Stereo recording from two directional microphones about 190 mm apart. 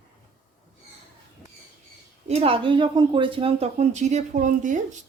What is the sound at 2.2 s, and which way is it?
Speech, 30° right (ahead or behind).